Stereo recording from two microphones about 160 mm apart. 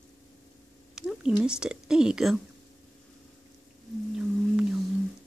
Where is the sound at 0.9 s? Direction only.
5° right (ahead or behind).